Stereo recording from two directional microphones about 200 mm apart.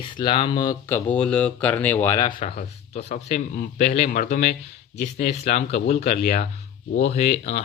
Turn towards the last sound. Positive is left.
turn(degrees=30)  # may be behind; listen again after turning